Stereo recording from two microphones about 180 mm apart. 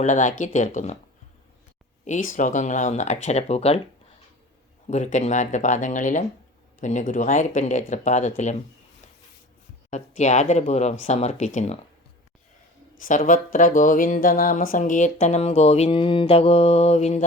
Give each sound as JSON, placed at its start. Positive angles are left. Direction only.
{"t": 0.0, "sound": "speech", "side_deg": 45}
{"t": 2.0, "sound": "speech", "side_deg": 45}
{"t": 4.9, "sound": "speech", "side_deg": 40}
{"t": 9.9, "sound": "speech", "side_deg": 40}
{"t": 13.1, "sound": "speech", "side_deg": 45}